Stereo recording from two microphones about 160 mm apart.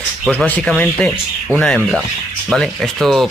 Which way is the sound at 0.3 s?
5° left (ahead or behind).